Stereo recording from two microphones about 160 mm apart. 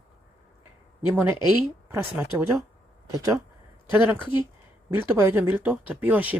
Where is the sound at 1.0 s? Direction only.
15° right (ahead or behind).